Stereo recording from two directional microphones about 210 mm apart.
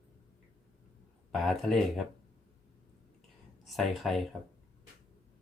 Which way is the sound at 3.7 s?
Centre (ahead or behind).